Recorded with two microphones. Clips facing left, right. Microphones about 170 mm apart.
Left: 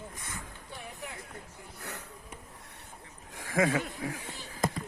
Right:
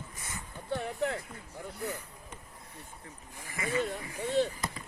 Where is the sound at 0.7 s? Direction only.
70° right (ahead or behind).